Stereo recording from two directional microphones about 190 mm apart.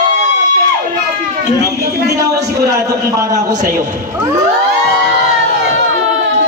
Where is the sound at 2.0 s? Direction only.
15° right (ahead or behind).